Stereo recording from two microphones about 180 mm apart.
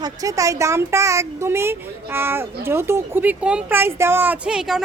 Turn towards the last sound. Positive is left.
turn(degrees=0)  # may be behind; listen again after turning